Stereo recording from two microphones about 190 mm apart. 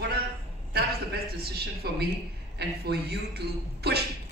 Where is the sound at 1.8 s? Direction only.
55° right (ahead or behind).